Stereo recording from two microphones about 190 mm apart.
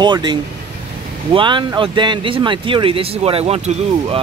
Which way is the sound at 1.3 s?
25° right (ahead or behind).